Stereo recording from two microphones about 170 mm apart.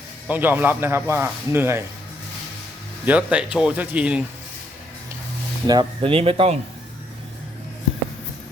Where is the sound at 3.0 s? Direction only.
10° right (ahead or behind).